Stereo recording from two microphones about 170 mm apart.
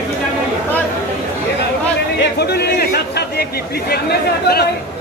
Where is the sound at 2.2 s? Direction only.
70° left (ahead or behind).